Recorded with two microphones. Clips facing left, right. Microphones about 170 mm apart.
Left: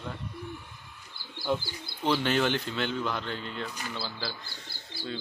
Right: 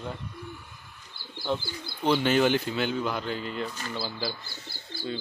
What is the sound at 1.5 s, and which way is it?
Speech, 5° left (ahead or behind).